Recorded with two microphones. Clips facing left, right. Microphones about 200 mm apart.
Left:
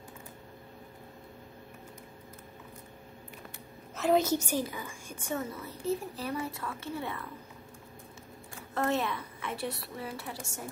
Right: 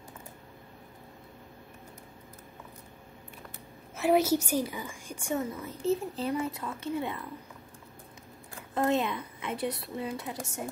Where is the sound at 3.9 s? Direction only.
10° right (ahead or behind).